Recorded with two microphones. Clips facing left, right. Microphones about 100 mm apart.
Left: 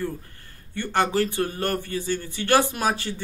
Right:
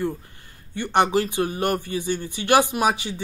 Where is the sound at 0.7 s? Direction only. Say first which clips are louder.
Right 3 dB; 20° right (ahead or behind).